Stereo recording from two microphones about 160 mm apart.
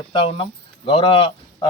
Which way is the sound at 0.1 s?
35° left (ahead or behind).